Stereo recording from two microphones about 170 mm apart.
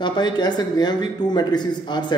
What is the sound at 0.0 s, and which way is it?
A man's voice, 25° left (ahead or behind).